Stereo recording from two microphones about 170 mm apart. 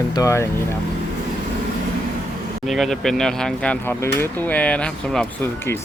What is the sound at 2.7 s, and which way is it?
Speech, centre (ahead or behind).